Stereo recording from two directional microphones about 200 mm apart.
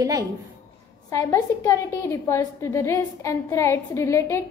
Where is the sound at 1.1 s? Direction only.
15° left (ahead or behind).